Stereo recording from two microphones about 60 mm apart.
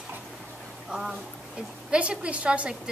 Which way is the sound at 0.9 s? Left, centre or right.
Centre.